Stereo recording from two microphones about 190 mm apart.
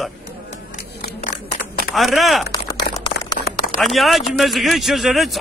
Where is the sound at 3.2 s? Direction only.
60° left (ahead or behind).